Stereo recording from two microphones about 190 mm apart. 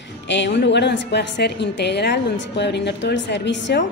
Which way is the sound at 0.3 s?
65° left (ahead or behind).